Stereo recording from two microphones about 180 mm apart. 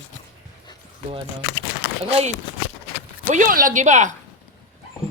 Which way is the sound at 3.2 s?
45° right (ahead or behind).